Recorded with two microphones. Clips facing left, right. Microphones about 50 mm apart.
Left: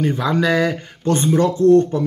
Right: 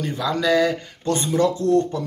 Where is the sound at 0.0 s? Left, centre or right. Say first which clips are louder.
Left 4 dB; left.